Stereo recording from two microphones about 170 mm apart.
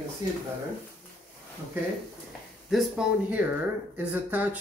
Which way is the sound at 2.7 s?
5° right (ahead or behind).